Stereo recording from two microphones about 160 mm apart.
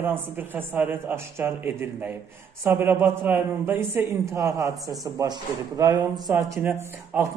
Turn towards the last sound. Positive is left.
turn(degrees=-15)  # may be behind; listen again after turning